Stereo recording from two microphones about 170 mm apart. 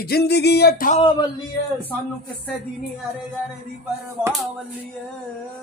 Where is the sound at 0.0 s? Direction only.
70° left (ahead or behind).